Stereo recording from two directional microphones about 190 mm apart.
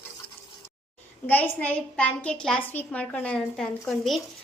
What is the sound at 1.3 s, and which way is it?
A woman's voice, 10° left (ahead or behind).